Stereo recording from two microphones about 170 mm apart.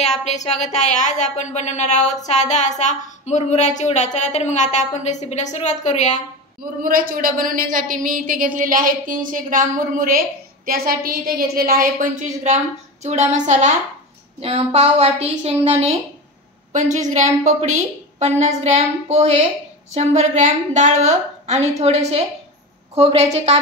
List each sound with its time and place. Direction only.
0.5 s a woman's voice: 40° left (ahead or behind)
6.8 s a woman's voice: 55° right (ahead or behind); by 23.6 s 40° right (ahead or behind)